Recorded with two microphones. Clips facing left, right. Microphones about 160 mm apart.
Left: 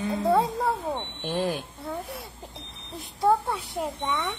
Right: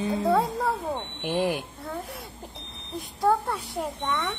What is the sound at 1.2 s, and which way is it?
Speech, 15° right (ahead or behind).